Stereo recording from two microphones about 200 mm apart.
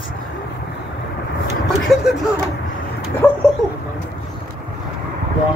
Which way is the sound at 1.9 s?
Centre (ahead or behind).